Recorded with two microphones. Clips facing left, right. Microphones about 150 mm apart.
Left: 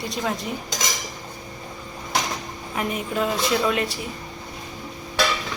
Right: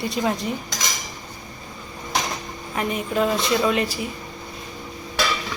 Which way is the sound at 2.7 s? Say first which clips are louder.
Right 2 dB; centre (ahead or behind).